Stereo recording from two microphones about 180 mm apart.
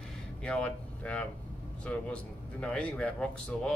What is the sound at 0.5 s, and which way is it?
Speech, 5° left (ahead or behind).